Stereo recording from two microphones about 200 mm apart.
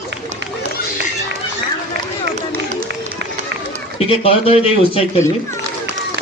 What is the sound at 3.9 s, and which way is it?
Speech, 30° left (ahead or behind).